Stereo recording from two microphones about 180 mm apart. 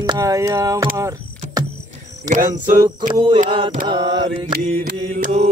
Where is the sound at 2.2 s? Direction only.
45° right (ahead or behind).